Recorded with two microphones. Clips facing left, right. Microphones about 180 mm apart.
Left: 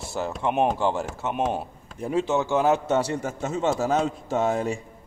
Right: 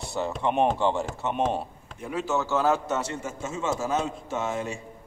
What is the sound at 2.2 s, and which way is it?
Speech, 15° left (ahead or behind).